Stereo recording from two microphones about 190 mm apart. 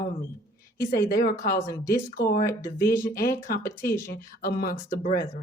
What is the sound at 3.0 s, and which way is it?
A woman's voice, 50° left (ahead or behind).